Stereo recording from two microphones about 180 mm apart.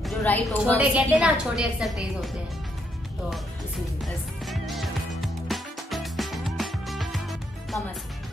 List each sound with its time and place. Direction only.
0.0 s a woman's voice: 10° left (ahead or behind)
0.7 s a woman's voice: 5° right (ahead or behind)
3.3 s music: centre (ahead or behind)